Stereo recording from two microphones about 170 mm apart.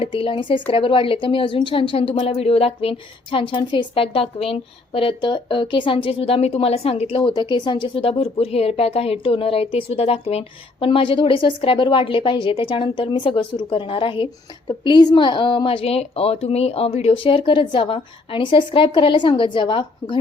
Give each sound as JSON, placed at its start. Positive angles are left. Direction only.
{"t": 0.0, "sound": "a woman's voice", "side_deg": 30}